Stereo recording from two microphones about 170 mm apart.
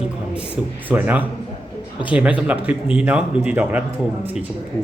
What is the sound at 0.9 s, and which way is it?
Speech, 10° right (ahead or behind).